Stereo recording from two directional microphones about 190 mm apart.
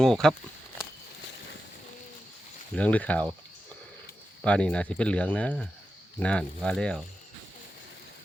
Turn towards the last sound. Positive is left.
turn(degrees=5)  # may be behind; listen again after turning